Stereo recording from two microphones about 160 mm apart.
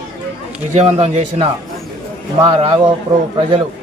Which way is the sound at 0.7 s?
40° right (ahead or behind).